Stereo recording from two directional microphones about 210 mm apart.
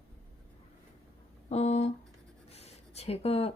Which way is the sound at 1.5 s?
30° left (ahead or behind).